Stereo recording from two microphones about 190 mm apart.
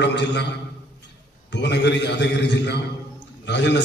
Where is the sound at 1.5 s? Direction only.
65° left (ahead or behind).